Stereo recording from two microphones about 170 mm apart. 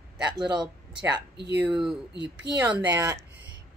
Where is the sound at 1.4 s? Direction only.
80° right.